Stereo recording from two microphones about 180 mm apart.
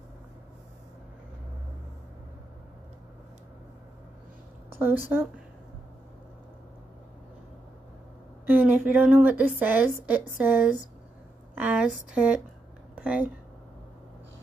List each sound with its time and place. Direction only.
4.7 s a woman's voice: 10° right (ahead or behind)
8.5 s a woman's voice: 10° right (ahead or behind)